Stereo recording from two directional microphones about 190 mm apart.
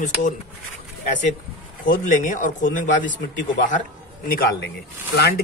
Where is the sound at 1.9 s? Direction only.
45° left (ahead or behind).